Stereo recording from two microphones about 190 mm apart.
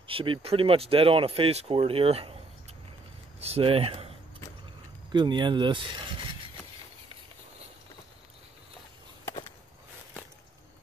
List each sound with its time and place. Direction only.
0.0 s speech: 25° right (ahead or behind)
3.3 s speech: 30° right (ahead or behind)
5.1 s speech: 25° right (ahead or behind)